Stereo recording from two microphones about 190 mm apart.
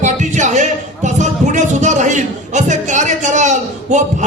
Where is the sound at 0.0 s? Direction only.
40° right (ahead or behind).